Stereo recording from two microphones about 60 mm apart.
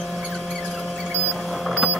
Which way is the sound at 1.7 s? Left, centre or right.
Centre.